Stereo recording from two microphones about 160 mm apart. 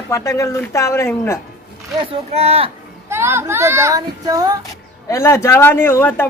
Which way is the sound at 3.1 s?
15° right (ahead or behind).